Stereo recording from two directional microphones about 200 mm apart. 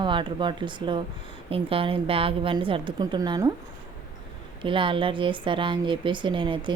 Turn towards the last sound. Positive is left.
turn(degrees=-25)  # may be behind; listen again after turning